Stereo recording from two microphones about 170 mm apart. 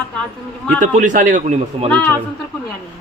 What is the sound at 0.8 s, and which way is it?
A man's voice, 45° right (ahead or behind).